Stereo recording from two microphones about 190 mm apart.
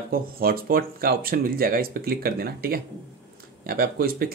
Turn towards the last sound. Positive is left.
turn(degrees=-50)  # may be behind; listen again after turning